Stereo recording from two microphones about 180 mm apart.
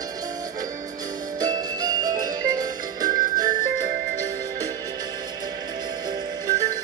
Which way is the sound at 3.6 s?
50° right (ahead or behind).